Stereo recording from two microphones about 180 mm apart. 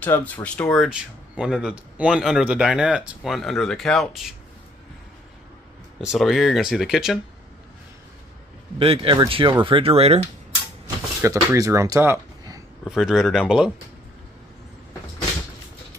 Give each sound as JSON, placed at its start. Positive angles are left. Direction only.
{"t": 0.0, "sound": "speech", "side_deg": 10}
{"t": 5.9, "sound": "speech", "side_deg": 0}
{"t": 8.7, "sound": "speech", "side_deg": -30}
{"t": 11.2, "sound": "speech", "side_deg": -15}
{"t": 12.8, "sound": "speech", "side_deg": -5}